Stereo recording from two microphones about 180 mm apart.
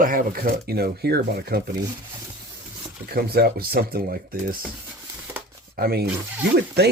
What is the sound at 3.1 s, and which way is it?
Speech, 60° right (ahead or behind).